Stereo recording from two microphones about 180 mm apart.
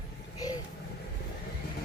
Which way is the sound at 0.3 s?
20° left (ahead or behind).